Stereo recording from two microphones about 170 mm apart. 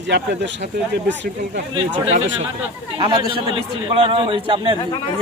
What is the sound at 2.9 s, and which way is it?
A man's voice, 30° right (ahead or behind).